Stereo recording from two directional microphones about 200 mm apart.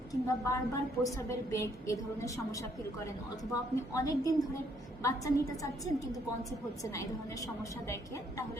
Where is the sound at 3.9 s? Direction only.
15° left (ahead or behind).